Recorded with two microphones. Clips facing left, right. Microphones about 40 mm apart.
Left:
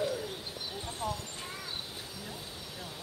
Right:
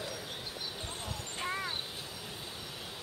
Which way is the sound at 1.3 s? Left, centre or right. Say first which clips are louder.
Right 6 dB; right.